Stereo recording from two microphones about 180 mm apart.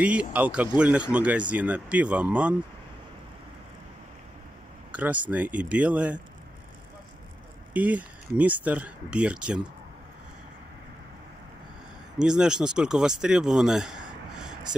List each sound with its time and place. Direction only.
0.0 s speech: 5° right (ahead or behind)
4.9 s speech: 10° right (ahead or behind)
7.7 s speech: 10° right (ahead or behind)
12.2 s speech: 5° right (ahead or behind)